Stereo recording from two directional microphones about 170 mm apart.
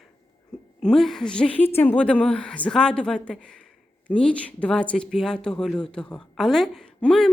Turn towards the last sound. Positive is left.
turn(degrees=5)  # may be behind; listen again after turning